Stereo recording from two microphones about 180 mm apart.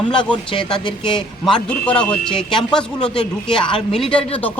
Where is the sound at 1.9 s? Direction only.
5° left (ahead or behind).